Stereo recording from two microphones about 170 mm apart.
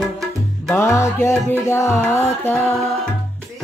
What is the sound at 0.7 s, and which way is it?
Music, 15° left (ahead or behind).